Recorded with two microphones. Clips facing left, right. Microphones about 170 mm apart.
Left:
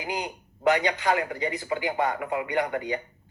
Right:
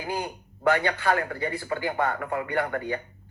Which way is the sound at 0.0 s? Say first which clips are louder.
Right 1 dB; 15° left (ahead or behind).